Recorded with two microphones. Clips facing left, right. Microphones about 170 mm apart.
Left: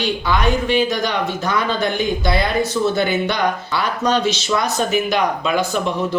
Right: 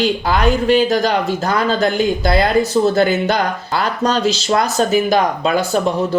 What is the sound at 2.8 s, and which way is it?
Speech, 30° right (ahead or behind).